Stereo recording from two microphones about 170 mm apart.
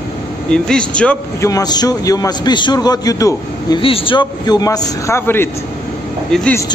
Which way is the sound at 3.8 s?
30° left (ahead or behind).